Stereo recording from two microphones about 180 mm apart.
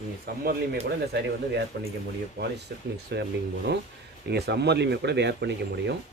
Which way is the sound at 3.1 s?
70° right (ahead or behind).